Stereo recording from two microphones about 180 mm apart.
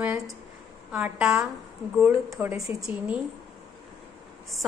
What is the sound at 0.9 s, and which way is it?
Speech, 5° right (ahead or behind).